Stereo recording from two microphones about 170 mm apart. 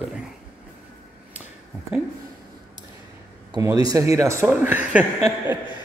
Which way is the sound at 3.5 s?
20° right (ahead or behind).